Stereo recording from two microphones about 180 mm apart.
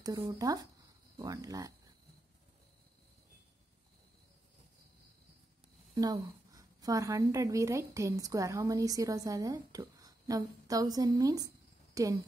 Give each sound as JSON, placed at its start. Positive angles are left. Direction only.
{"t": 0.0, "sound": "speech", "side_deg": -20}
{"t": 5.9, "sound": "a woman's voice", "side_deg": -20}